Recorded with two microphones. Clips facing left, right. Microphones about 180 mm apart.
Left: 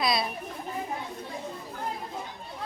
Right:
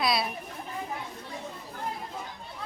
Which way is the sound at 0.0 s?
Centre (ahead or behind).